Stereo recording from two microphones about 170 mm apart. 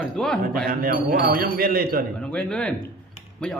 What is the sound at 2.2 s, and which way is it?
Speech, 5° left (ahead or behind).